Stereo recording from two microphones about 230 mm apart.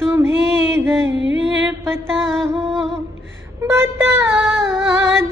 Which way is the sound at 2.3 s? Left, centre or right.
Centre.